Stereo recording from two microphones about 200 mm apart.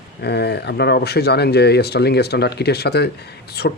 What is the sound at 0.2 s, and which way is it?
Speech, 55° left (ahead or behind).